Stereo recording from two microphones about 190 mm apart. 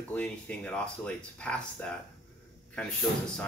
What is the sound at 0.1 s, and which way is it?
Speech, 5° left (ahead or behind).